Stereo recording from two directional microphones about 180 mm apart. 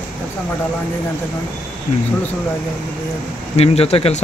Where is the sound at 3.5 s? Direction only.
35° left (ahead or behind).